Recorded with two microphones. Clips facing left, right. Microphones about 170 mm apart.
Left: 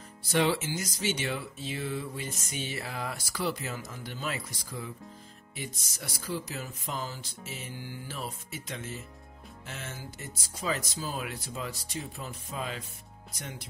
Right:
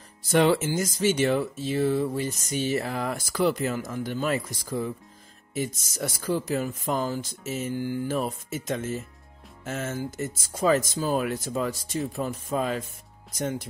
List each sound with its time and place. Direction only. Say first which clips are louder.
0.3 s speech: right 6 dB; 50° right (ahead or behind)